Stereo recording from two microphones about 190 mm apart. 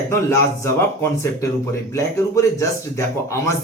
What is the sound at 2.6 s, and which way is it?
Speech, 15° left (ahead or behind).